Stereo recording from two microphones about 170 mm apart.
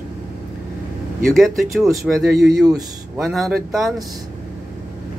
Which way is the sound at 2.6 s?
20° right (ahead or behind).